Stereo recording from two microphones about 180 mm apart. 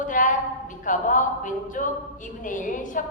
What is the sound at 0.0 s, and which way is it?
A woman's voice, 45° left (ahead or behind).